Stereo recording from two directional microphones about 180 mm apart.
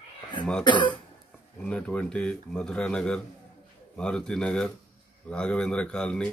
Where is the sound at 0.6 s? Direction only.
25° left (ahead or behind).